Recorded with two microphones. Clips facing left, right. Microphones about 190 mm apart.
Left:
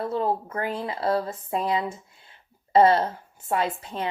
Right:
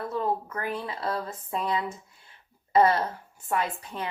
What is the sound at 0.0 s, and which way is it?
Speech, 30° left (ahead or behind).